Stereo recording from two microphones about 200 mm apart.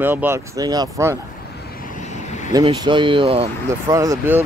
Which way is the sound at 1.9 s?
35° left (ahead or behind).